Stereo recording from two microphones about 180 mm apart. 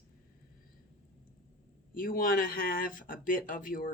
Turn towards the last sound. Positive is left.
turn(degrees=50)  # may be behind; listen again after turning